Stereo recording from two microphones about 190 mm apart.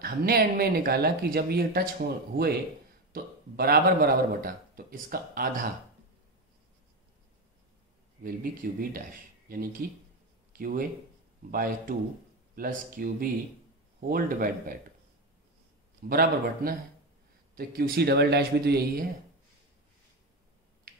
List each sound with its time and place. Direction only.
0.0 s a man's voice: 55° right (ahead or behind)
8.2 s a man's voice: 50° right (ahead or behind)
16.1 s a man's voice: 50° right (ahead or behind)